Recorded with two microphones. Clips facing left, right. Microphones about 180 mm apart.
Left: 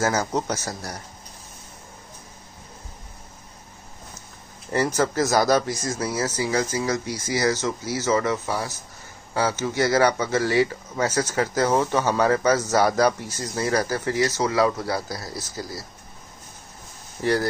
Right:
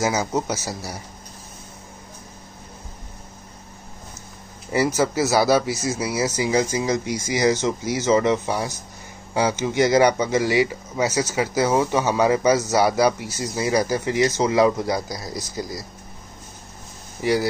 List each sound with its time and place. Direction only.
0.0 s speech: 10° right (ahead or behind)
4.6 s speech: 10° right (ahead or behind)
17.2 s speech: 10° right (ahead or behind)